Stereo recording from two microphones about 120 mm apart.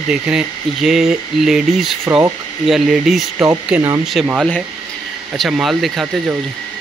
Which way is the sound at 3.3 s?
20° right (ahead or behind).